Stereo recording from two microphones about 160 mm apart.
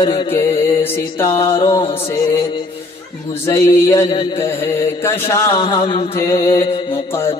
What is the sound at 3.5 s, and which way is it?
Mantra, 20° left (ahead or behind).